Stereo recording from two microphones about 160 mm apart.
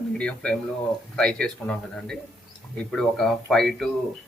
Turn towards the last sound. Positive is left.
turn(degrees=5)  # may be behind; listen again after turning